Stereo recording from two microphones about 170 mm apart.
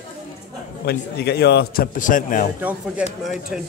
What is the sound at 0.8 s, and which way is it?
A man's voice, 75° left (ahead or behind).